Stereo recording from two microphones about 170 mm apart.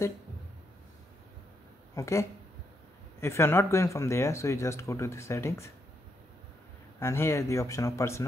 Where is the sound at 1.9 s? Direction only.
15° left (ahead or behind).